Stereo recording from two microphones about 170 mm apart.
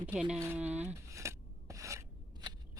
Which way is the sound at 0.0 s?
10° right (ahead or behind).